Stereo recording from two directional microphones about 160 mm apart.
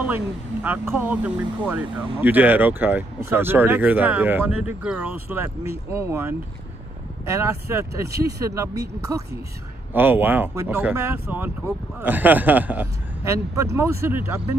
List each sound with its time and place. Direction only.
0.0 s speech: 10° right (ahead or behind)